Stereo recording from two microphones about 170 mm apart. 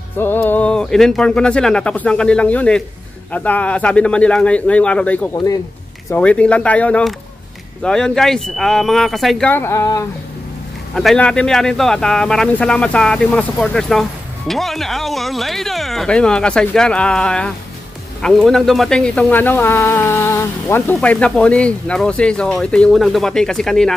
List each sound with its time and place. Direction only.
0.2 s speech: 10° left (ahead or behind)
9.5 s speech: 15° left (ahead or behind)
11.0 s speech: 5° left (ahead or behind)